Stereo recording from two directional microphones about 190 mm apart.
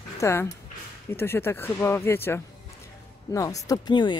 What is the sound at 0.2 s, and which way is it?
Speech, 15° left (ahead or behind).